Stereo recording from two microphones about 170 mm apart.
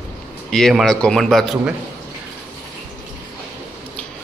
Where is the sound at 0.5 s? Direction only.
5° left (ahead or behind).